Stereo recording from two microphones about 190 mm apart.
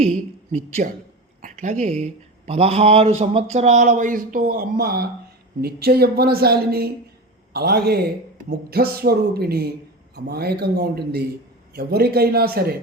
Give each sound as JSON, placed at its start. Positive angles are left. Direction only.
{"t": 0.5, "sound": "speech", "side_deg": -40}